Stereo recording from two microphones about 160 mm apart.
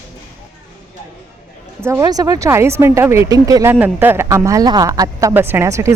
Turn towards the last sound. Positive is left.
turn(degrees=-20)  # may be behind; listen again after turning